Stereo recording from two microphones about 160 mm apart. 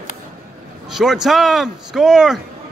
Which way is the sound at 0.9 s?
Centre (ahead or behind).